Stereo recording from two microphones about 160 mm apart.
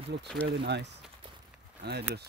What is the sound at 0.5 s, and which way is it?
Speech, 90° right.